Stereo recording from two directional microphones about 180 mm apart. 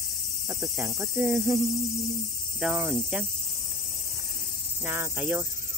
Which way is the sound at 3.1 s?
10° right (ahead or behind).